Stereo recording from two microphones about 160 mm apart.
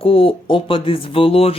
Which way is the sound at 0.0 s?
35° left (ahead or behind).